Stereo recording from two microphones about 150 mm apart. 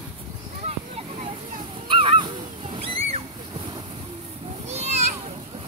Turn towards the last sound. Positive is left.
turn(degrees=-45)  # may be behind; listen again after turning